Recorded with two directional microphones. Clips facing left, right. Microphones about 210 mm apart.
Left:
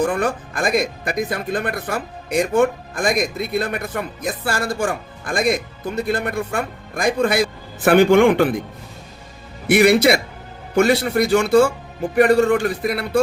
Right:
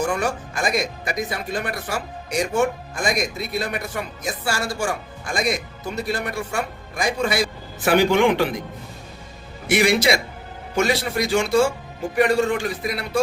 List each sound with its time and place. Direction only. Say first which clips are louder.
0.0 s speech: left 3 dB; 55° left (ahead or behind)
9.6 s speech: left 5 dB; 60° left (ahead or behind)